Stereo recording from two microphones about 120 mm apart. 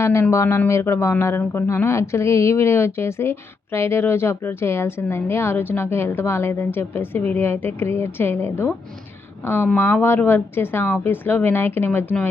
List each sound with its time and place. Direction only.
0.0 s a woman's voice: 20° left (ahead or behind)